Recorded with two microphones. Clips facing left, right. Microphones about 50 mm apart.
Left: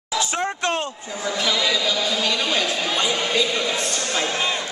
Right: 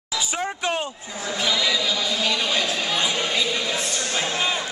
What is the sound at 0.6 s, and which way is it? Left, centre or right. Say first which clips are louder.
Speech: left 2 dB; centre.